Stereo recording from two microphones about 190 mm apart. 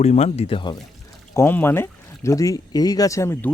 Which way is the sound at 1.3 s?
10° left (ahead or behind).